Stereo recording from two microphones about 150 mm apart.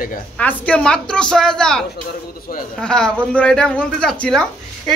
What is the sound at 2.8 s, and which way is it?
Speech, 5° left (ahead or behind).